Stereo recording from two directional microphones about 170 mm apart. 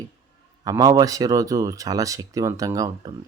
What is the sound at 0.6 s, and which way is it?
Speech, 20° right (ahead or behind).